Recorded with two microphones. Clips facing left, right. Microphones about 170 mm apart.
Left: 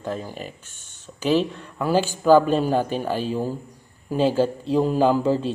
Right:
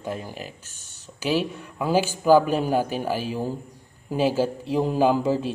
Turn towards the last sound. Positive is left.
turn(degrees=-10)  # may be behind; listen again after turning